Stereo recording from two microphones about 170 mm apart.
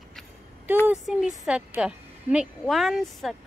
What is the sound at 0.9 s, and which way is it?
A woman's voice, 5° right (ahead or behind).